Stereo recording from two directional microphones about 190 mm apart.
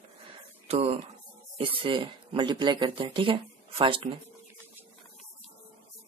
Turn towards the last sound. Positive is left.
turn(degrees=-25)  # may be behind; listen again after turning